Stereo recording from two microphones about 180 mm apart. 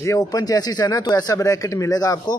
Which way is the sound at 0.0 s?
20° left (ahead or behind).